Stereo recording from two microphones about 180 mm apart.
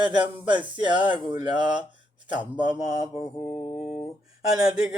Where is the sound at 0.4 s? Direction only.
25° right (ahead or behind).